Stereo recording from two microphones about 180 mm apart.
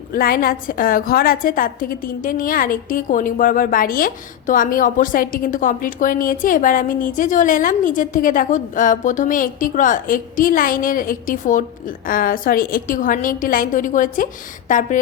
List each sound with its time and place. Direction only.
0.1 s a woman's voice: 55° left (ahead or behind)